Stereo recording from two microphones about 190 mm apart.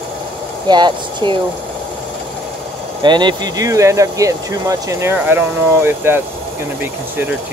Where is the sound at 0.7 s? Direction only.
25° right (ahead or behind).